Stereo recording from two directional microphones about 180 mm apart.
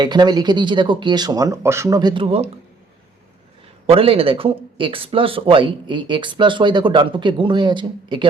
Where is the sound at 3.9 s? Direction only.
30° right (ahead or behind).